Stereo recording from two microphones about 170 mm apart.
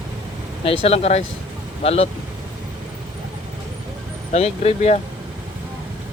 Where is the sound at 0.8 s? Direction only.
40° left (ahead or behind).